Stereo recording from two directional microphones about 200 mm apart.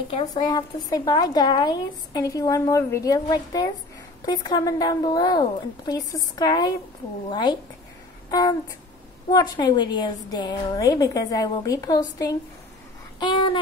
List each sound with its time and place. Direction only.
0.3 s speech: 20° left (ahead or behind)
8.3 s a sound: 15° left (ahead or behind)
9.3 s speech: 20° left (ahead or behind)